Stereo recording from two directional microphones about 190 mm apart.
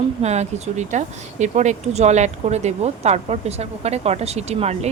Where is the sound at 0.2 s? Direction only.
35° right (ahead or behind).